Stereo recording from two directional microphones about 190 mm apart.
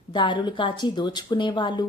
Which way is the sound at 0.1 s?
25° left (ahead or behind).